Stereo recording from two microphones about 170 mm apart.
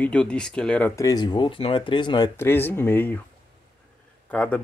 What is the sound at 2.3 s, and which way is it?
Speech, 15° left (ahead or behind).